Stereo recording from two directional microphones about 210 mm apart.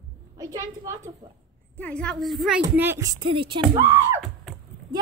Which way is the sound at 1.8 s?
5° left (ahead or behind).